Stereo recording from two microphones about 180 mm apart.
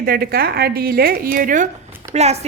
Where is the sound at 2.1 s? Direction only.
35° right (ahead or behind).